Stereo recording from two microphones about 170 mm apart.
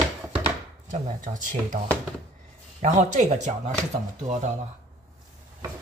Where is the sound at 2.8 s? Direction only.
45° right (ahead or behind).